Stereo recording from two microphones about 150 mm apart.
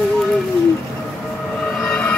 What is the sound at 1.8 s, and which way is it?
Train, 5° left (ahead or behind).